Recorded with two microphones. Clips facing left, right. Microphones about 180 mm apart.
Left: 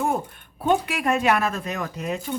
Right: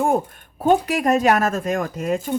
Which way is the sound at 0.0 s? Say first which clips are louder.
Right 5 dB; 45° right (ahead or behind).